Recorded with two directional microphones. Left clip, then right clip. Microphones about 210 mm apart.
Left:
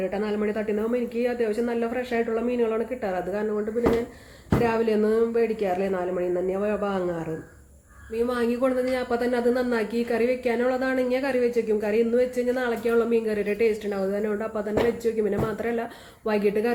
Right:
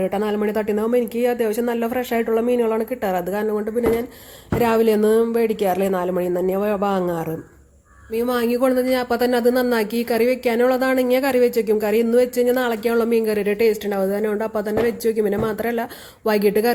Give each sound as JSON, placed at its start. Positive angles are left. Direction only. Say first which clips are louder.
{"t": 0.0, "sound": "speech", "louder": "right 5 dB", "side_deg": -50}
{"t": 4.6, "sound": "speech", "louder": "right 7 dB", "side_deg": -50}